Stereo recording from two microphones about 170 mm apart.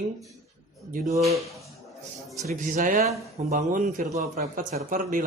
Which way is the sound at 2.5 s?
50° right (ahead or behind).